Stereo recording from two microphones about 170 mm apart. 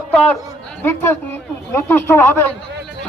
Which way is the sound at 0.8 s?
15° left (ahead or behind).